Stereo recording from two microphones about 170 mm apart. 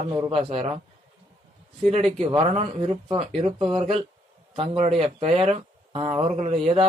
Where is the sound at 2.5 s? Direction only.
35° right (ahead or behind).